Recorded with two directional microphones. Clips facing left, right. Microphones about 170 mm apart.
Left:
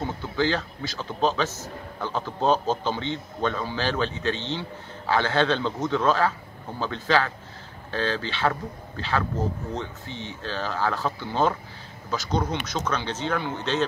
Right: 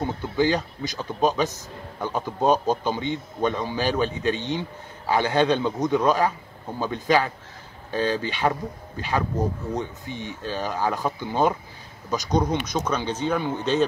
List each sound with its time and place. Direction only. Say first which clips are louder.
0.0 s a man's voice: right 3 dB; 15° right (ahead or behind)